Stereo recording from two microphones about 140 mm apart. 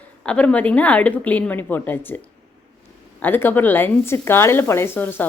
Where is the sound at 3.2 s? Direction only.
15° left (ahead or behind).